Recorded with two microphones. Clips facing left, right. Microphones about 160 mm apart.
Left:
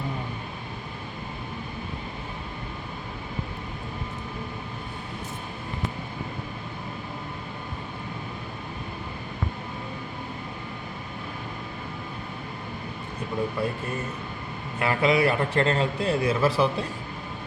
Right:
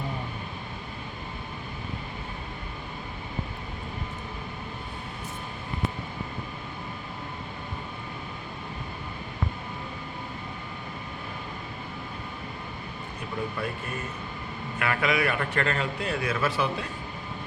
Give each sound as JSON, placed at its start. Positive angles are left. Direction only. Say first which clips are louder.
{"t": 14.8, "sound": "a man's voice", "louder": "left 4 dB", "side_deg": 30}